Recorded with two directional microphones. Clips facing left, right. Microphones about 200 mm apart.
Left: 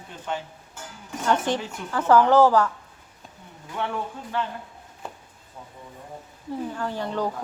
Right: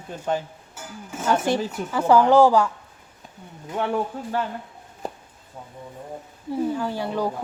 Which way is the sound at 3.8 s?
35° right (ahead or behind).